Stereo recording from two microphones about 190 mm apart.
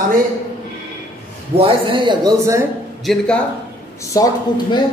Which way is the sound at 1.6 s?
30° right (ahead or behind).